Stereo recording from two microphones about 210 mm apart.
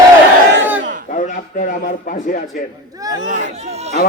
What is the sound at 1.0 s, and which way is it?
A man's voice, 40° left (ahead or behind).